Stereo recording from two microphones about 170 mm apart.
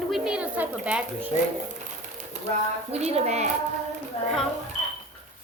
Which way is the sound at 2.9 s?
40° right (ahead or behind).